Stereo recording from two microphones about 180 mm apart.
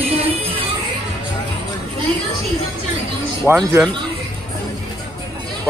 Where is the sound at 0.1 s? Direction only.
35° right (ahead or behind).